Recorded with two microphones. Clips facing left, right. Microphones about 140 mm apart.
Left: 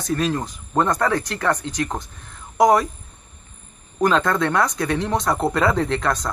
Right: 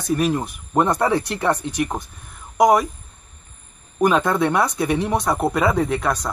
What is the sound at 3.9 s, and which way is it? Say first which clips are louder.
Speech: right 1 dB; 10° right (ahead or behind).